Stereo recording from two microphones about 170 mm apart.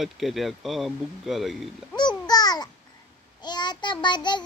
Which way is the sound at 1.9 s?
25° left (ahead or behind).